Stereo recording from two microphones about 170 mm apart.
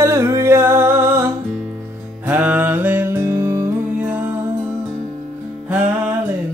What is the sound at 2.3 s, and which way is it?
Music, 10° right (ahead or behind).